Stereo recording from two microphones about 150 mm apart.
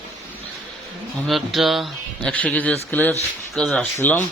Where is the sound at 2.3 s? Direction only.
10° left (ahead or behind).